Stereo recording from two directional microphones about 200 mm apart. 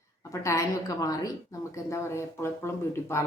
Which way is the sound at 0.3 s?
15° left (ahead or behind).